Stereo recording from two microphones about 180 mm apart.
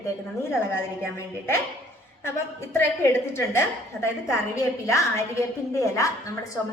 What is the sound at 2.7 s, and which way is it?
A woman's voice, 15° left (ahead or behind).